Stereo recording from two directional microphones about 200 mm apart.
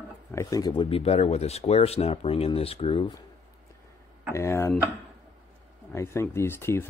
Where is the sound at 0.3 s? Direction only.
15° left (ahead or behind).